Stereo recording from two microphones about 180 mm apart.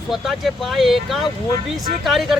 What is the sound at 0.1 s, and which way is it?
Speech, centre (ahead or behind).